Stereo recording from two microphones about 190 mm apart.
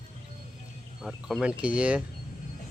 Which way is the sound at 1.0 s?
Centre (ahead or behind).